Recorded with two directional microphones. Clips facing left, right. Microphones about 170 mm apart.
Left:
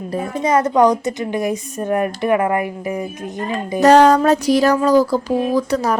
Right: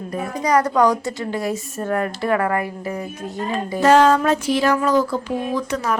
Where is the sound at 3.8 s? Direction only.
40° left (ahead or behind).